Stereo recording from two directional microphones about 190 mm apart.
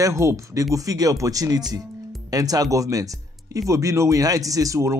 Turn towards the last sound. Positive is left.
turn(degrees=-15)  # may be behind; listen again after turning